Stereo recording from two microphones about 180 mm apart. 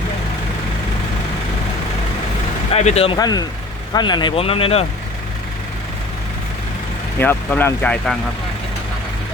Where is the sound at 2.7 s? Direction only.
35° left (ahead or behind).